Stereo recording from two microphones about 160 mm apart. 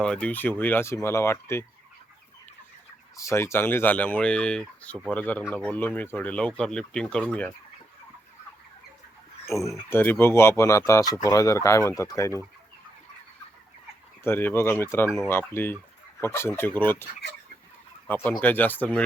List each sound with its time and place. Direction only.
0.0 s speech: 5° left (ahead or behind)
3.2 s speech: 15° left (ahead or behind)
9.6 s speech: 15° left (ahead or behind)
14.3 s speech: 15° left (ahead or behind)
18.1 s speech: 10° left (ahead or behind)